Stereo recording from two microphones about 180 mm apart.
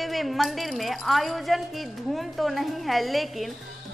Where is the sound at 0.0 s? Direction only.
Centre (ahead or behind).